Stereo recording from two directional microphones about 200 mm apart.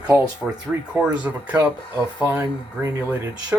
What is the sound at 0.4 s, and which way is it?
Speech, centre (ahead or behind).